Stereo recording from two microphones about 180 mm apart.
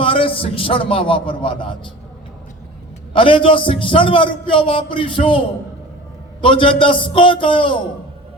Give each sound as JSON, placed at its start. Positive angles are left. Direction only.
{"t": 0.0, "sound": "a man's voice", "side_deg": 30}
{"t": 3.1, "sound": "a man's voice", "side_deg": 30}
{"t": 6.4, "sound": "a man's voice", "side_deg": 30}